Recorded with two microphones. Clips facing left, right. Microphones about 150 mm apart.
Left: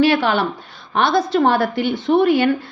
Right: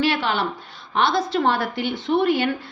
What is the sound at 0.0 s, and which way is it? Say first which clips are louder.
A woman's voice: left 6 dB; 50° left (ahead or behind).